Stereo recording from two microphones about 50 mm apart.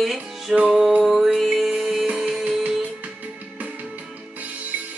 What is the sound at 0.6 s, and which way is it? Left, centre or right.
Music, centre.